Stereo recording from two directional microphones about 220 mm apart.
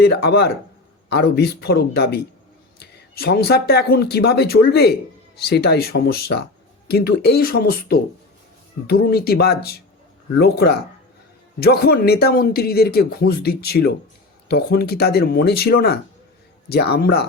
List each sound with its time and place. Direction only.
0.0 s speech: 45° left (ahead or behind)